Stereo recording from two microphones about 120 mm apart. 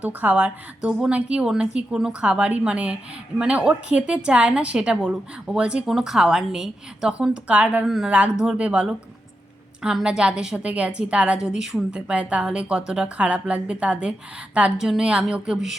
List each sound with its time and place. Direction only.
0.0 s a woman's voice: 10° right (ahead or behind)